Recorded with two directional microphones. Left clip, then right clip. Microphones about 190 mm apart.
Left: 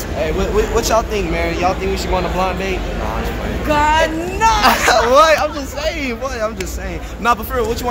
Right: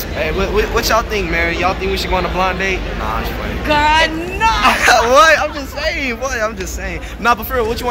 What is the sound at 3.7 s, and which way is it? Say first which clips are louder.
Speech: right 2 dB; 40° left (ahead or behind).